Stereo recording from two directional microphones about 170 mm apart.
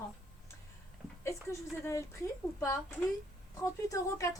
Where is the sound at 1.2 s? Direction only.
15° left (ahead or behind).